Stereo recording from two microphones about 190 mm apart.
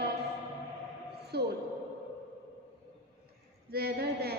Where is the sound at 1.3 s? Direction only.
55° right (ahead or behind).